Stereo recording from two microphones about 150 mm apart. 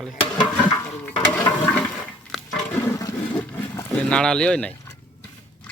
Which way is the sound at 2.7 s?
15° left (ahead or behind).